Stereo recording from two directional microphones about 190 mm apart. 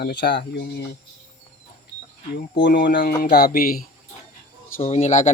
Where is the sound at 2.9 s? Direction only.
45° left (ahead or behind).